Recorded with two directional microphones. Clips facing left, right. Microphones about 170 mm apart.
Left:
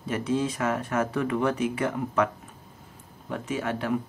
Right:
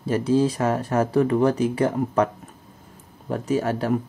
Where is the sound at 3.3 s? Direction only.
40° right (ahead or behind).